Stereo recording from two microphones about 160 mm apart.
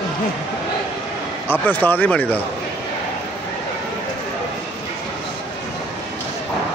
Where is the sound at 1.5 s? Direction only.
10° left (ahead or behind).